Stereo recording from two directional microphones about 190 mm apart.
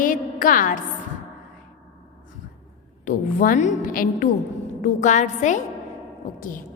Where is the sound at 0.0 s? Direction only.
45° left (ahead or behind).